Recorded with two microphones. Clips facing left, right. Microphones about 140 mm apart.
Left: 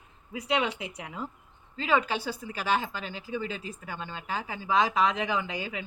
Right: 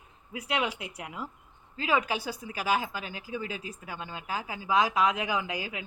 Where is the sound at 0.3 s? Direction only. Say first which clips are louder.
Left 2 dB; 5° right (ahead or behind).